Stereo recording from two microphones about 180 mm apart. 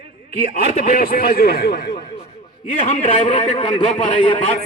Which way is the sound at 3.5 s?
30° left (ahead or behind).